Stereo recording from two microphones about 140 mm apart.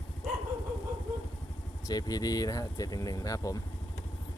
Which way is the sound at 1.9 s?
30° left (ahead or behind).